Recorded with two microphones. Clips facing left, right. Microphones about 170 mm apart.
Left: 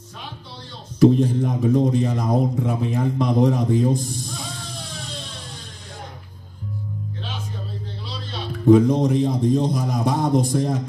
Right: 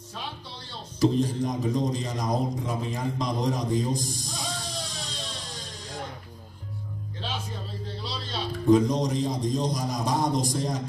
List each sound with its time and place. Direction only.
0.9 s a man's voice: 60° left (ahead or behind)
8.6 s a man's voice: 60° left (ahead or behind)